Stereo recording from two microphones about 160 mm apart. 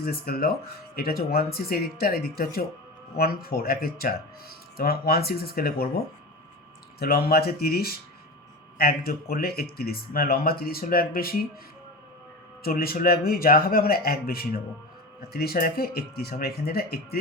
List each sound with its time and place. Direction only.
0.0 s speech: 70° left (ahead or behind)
7.0 s speech: 70° left (ahead or behind)
12.6 s speech: 65° left (ahead or behind)